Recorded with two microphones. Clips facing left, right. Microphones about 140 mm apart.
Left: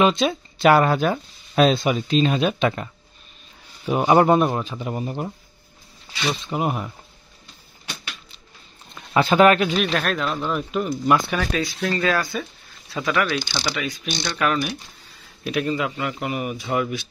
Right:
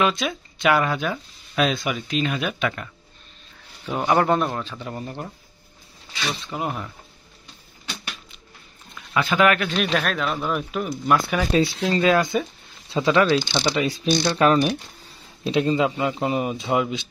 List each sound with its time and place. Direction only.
0.0 s speech: 25° left (ahead or behind); by 1.7 s 40° left (ahead or behind)
1.7 s speech: 30° left (ahead or behind)
6.4 s speech: 15° left (ahead or behind)
8.9 s speech: 35° left (ahead or behind)
9.7 s speech: centre (ahead or behind)
11.9 s speech: 20° right (ahead or behind)